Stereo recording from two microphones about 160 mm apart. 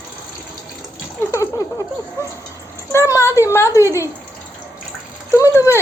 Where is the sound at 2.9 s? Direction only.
20° left (ahead or behind).